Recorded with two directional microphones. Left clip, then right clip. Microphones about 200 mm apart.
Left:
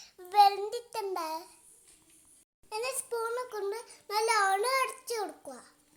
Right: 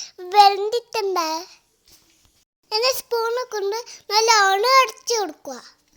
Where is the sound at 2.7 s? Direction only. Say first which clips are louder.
Right 14 dB; 40° right (ahead or behind).